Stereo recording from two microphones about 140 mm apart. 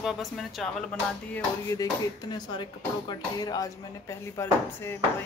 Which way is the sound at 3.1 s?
30° left (ahead or behind).